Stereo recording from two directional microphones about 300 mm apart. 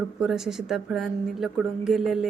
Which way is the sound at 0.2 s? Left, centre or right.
Centre.